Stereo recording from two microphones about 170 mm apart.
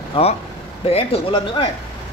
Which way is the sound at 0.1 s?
35° left (ahead or behind).